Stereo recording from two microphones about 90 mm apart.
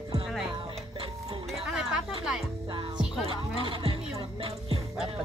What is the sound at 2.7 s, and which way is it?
Music, 60° right (ahead or behind).